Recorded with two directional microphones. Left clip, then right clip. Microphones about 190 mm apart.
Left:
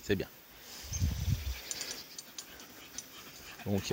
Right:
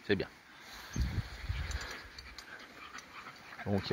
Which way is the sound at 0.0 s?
5° left (ahead or behind).